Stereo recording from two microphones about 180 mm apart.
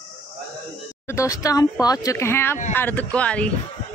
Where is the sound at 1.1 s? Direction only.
20° left (ahead or behind).